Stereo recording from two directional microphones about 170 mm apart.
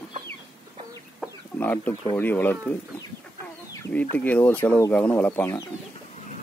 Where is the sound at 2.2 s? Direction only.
10° left (ahead or behind).